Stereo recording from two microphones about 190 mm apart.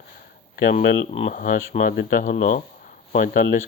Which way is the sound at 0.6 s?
45° left (ahead or behind).